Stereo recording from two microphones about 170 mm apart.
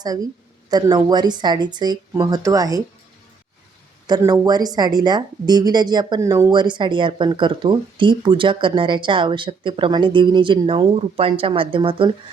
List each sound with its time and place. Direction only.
0.7 s speech: 25° right (ahead or behind)
4.2 s speech: 20° right (ahead or behind)